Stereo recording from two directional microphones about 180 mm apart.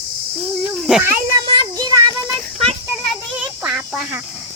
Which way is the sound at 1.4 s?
25° right (ahead or behind).